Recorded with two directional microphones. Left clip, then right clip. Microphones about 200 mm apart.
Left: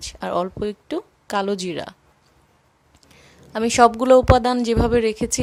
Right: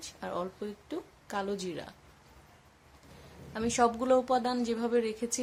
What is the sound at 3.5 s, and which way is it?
A woman's voice, 45° left (ahead or behind).